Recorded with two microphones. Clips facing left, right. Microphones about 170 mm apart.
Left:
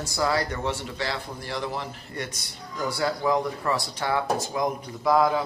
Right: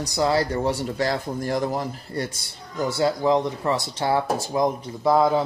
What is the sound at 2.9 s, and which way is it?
A man's voice, 25° right (ahead or behind).